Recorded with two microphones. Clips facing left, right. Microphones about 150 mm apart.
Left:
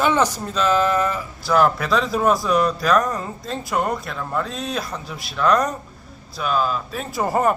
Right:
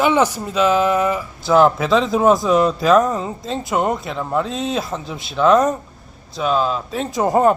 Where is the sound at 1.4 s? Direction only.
25° right (ahead or behind).